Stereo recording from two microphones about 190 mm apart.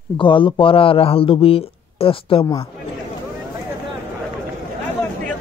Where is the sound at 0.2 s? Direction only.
25° left (ahead or behind).